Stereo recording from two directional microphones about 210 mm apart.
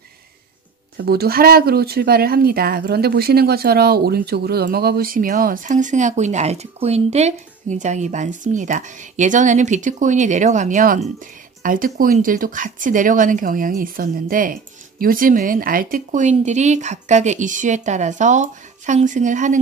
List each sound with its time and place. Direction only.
0.9 s speech: 50° right (ahead or behind)